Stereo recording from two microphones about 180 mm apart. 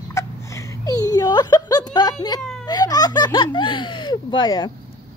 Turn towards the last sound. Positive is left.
turn(degrees=25)  # may be behind; listen again after turning